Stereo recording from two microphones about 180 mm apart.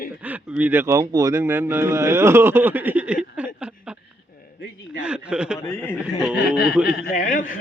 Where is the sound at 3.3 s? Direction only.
10° right (ahead or behind).